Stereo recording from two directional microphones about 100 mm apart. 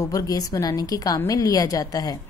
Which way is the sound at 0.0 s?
35° left (ahead or behind).